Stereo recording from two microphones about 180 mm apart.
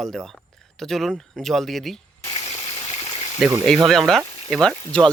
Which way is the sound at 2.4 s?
35° left (ahead or behind).